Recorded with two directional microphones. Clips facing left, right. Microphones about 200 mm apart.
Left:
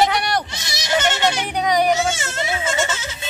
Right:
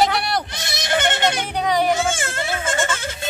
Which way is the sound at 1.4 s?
15° left (ahead or behind).